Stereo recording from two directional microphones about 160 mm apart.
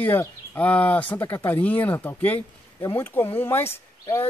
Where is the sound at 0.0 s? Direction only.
10° left (ahead or behind).